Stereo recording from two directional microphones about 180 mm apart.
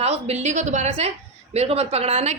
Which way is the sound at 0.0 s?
35° right (ahead or behind).